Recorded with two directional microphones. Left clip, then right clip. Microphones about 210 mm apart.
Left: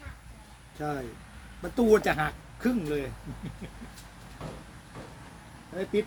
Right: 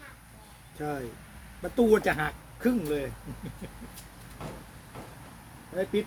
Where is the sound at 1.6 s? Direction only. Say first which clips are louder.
Even; 20° left (ahead or behind).